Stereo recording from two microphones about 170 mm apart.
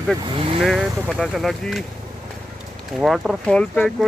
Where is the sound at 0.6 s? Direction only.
Centre (ahead or behind).